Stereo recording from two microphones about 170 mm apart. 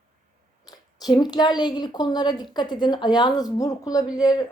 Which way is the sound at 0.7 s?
25° left (ahead or behind).